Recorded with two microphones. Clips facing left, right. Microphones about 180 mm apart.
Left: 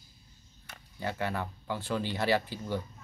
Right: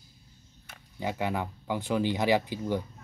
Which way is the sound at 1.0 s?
15° right (ahead or behind).